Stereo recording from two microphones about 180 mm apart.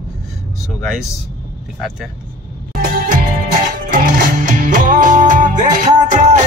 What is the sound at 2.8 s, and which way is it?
Music, 50° right (ahead or behind).